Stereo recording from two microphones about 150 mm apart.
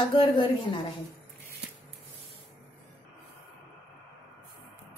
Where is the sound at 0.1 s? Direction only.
35° left (ahead or behind).